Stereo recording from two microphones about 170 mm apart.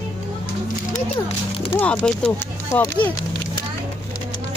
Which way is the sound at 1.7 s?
5° left (ahead or behind).